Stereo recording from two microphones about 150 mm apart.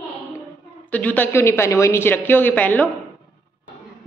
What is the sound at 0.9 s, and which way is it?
Speech, 10° left (ahead or behind).